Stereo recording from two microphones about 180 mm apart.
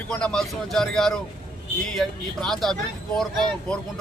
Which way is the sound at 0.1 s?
5° left (ahead or behind).